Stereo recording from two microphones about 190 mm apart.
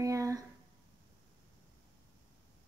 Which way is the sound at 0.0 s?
15° right (ahead or behind).